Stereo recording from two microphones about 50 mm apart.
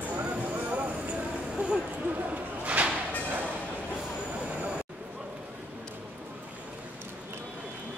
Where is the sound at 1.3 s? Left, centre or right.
Centre.